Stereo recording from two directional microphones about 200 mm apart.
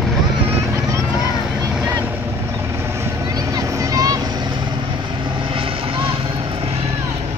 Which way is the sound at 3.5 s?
15° right (ahead or behind).